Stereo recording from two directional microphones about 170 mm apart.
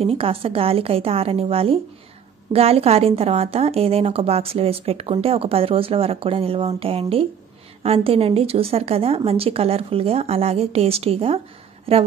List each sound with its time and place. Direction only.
0.0 s a woman's voice: 35° right (ahead or behind)